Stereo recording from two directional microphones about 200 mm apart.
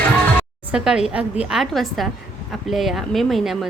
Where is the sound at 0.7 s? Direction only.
5° right (ahead or behind).